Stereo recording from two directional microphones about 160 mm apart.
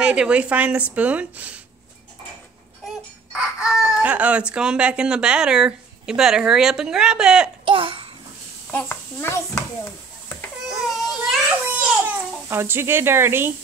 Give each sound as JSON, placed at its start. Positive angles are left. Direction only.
{"t": 0.0, "sound": "speech", "side_deg": -5}
{"t": 3.3, "sound": "speech", "side_deg": -5}
{"t": 7.6, "sound": "babbling", "side_deg": -35}
{"t": 8.7, "sound": "a child's voice", "side_deg": 15}
{"t": 10.7, "sound": "a sound", "side_deg": 0}
{"t": 12.4, "sound": "speech", "side_deg": -15}